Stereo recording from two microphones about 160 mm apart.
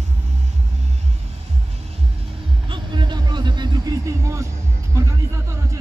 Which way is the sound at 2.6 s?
30° right (ahead or behind).